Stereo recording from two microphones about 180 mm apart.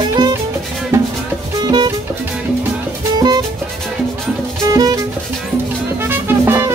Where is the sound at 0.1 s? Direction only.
20° right (ahead or behind).